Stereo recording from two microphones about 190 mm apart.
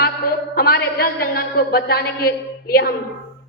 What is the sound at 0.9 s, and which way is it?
A woman's voice, 55° left (ahead or behind).